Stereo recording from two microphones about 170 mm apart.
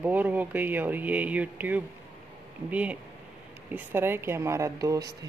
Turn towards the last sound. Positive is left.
turn(degrees=-20)  # may be behind; listen again after turning